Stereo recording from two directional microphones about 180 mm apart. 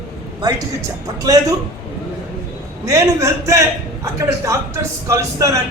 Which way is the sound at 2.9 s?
15° right (ahead or behind).